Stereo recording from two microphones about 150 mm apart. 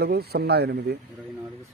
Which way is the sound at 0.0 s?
90° right.